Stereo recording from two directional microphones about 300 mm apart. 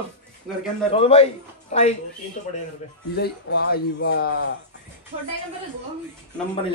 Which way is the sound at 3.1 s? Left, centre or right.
Left.